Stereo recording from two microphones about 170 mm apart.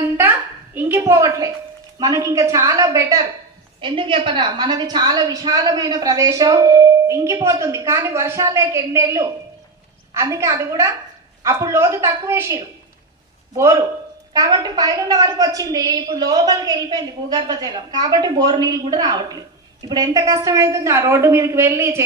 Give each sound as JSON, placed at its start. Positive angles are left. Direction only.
{"t": 0.2, "sound": "a woman's voice", "side_deg": -10}
{"t": 3.8, "sound": "a woman's voice", "side_deg": -30}
{"t": 14.3, "sound": "a woman's voice", "side_deg": -20}